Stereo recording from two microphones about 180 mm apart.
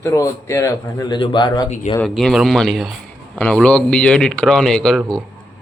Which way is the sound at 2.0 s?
Centre (ahead or behind).